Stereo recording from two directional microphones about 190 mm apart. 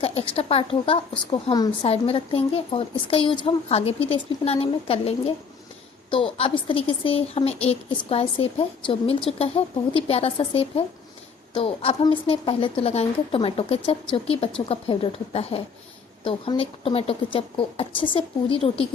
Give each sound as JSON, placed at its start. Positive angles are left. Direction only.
{"t": 0.2, "sound": "a woman's voice", "side_deg": 30}